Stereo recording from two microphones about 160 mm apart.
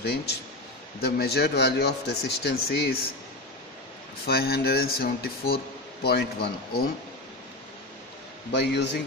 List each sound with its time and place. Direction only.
0.0 s speech: 90° left
4.3 s speech: 75° left (ahead or behind)
6.0 s speech: 90° left
8.5 s speech: 90° left